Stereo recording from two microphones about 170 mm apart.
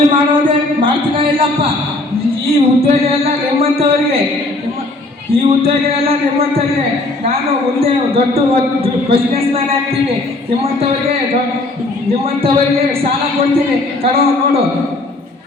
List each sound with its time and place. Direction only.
0.1 s speech: 30° right (ahead or behind)
2.5 s speech: 35° right (ahead or behind)
5.3 s speech: 35° right (ahead or behind)
7.8 s speech: 35° right (ahead or behind)
12.2 s speech: 35° right (ahead or behind)
14.0 s speech: 35° right (ahead or behind)